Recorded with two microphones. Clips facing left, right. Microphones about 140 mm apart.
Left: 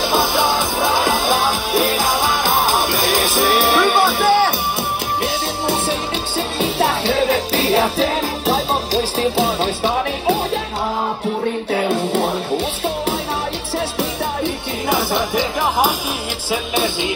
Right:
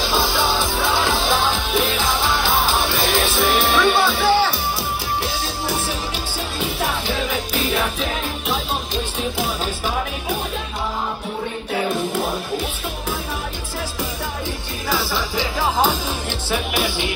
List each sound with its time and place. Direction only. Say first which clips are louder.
0.0 s music: left 3 dB; 20° left (ahead or behind)
0.9 s music: left 2 dB; 45° left (ahead or behind)
1.7 s music: left 3 dB; 10° left (ahead or behind)
2.4 s music: left 3 dB; 45° left (ahead or behind)
3.5 s music: left 2 dB; 10° left (ahead or behind)
4.0 s music: left 3 dB; 50° left (ahead or behind)
7.6 s music: left 8 dB; 35° left (ahead or behind)
14.9 s music: left 4 dB; 20° left (ahead or behind)